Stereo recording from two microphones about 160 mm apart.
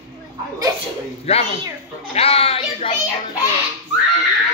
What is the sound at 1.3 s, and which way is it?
A child's voice, 35° left (ahead or behind).